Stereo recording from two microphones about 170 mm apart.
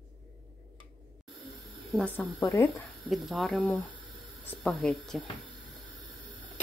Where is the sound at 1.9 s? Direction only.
5° left (ahead or behind).